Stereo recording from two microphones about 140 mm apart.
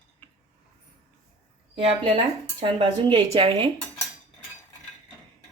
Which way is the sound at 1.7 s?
40° right (ahead or behind).